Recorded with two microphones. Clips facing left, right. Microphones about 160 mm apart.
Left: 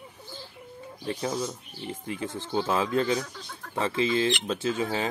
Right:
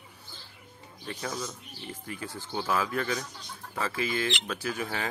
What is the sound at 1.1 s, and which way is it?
Speech, 25° left (ahead or behind).